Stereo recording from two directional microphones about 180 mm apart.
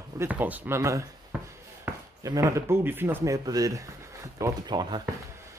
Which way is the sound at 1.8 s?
20° right (ahead or behind).